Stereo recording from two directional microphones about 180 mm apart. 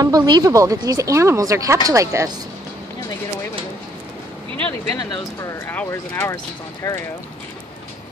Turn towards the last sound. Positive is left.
turn(degrees=15)  # may be behind; listen again after turning